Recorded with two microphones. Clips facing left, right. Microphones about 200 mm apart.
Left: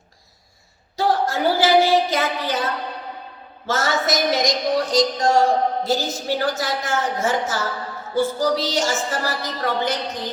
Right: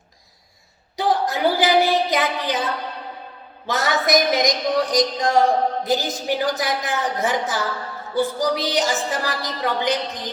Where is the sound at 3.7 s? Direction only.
15° right (ahead or behind).